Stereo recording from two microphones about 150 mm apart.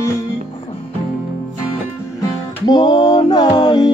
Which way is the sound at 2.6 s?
30° left (ahead or behind).